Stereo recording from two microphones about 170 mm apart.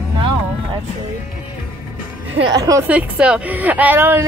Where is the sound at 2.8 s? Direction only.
10° right (ahead or behind).